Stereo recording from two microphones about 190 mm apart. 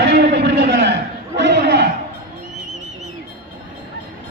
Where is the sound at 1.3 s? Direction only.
65° right (ahead or behind).